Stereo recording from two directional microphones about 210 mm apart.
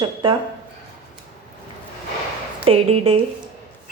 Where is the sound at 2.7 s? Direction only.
30° right (ahead or behind).